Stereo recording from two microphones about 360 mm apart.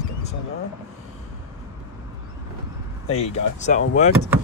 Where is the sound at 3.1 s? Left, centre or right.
Centre.